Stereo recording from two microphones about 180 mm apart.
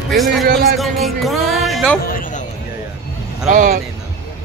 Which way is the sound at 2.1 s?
50° left (ahead or behind).